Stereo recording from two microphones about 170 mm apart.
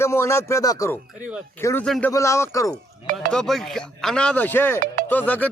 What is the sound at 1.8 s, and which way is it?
Speech, 5° left (ahead or behind).